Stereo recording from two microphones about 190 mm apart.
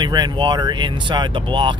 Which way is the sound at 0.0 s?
20° right (ahead or behind).